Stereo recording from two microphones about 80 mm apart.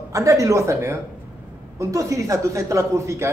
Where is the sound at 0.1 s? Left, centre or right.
Right.